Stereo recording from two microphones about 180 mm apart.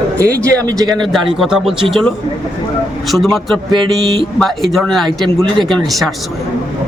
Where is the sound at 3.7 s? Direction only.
25° right (ahead or behind).